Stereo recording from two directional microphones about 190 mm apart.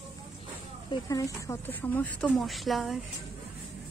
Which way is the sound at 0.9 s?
20° left (ahead or behind).